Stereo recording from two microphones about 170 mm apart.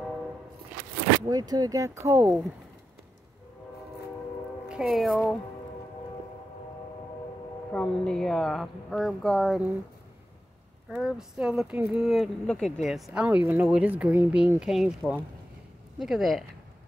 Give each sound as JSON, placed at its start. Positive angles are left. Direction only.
{"t": 1.3, "sound": "speech", "side_deg": -20}
{"t": 4.6, "sound": "speech", "side_deg": 0}
{"t": 7.7, "sound": "speech", "side_deg": 5}
{"t": 11.0, "sound": "speech", "side_deg": 0}